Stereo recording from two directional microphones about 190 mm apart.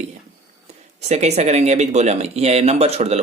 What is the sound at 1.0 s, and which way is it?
Speech, 35° right (ahead or behind).